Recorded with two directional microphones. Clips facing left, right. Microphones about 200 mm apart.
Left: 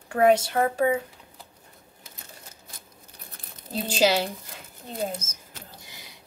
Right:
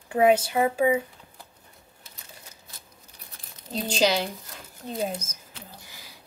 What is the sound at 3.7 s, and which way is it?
Speech, 5° left (ahead or behind).